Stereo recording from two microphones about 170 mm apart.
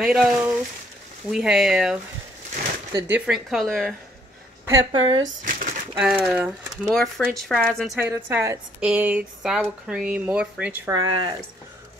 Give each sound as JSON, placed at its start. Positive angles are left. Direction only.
{"t": 0.0, "sound": "speech", "side_deg": -5}
{"t": 2.9, "sound": "speech", "side_deg": -20}
{"t": 3.2, "sound": "speech", "side_deg": 0}
{"t": 4.9, "sound": "speech", "side_deg": -25}
{"t": 5.4, "sound": "a sound", "side_deg": -55}
{"t": 5.9, "sound": "speech", "side_deg": -5}
{"t": 6.9, "sound": "speech", "side_deg": 5}
{"t": 8.0, "sound": "speech", "side_deg": -15}
{"t": 10.9, "sound": "speech", "side_deg": -25}